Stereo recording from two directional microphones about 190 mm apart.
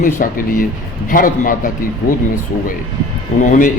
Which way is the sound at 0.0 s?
45° left (ahead or behind).